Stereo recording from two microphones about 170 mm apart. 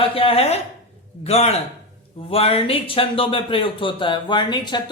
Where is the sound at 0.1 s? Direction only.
35° left (ahead or behind).